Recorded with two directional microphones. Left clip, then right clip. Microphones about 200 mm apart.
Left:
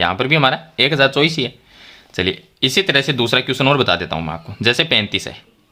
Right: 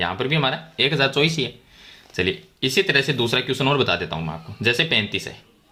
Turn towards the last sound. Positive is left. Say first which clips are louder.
# left 5 dB
turn(degrees=30)  # may be behind; listen again after turning